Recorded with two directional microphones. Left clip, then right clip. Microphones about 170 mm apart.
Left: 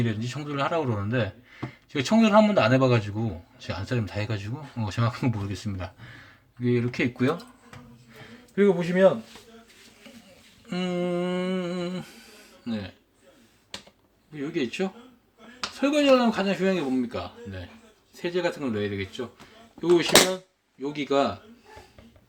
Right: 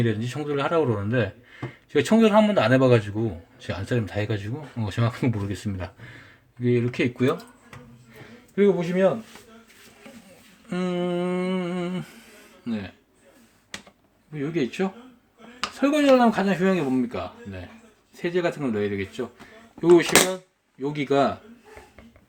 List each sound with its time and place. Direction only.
0.0 s a man's voice: 15° right (ahead or behind)
8.1 s a sound: 5° left (ahead or behind)
10.7 s a man's voice: 10° right (ahead or behind)
14.3 s a man's voice: 20° right (ahead or behind)